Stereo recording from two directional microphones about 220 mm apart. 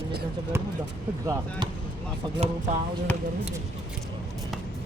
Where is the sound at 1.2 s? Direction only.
15° right (ahead or behind).